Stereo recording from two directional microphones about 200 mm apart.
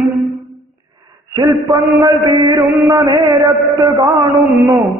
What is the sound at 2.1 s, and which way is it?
A man's voice, 20° right (ahead or behind).